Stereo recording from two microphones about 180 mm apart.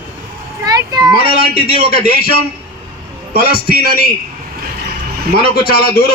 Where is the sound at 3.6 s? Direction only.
60° left (ahead or behind).